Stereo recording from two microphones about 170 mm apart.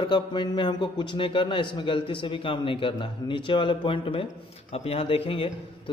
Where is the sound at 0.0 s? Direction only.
25° left (ahead or behind).